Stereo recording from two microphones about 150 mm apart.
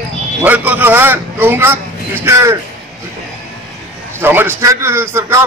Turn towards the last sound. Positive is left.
turn(degrees=-20)  # may be behind; listen again after turning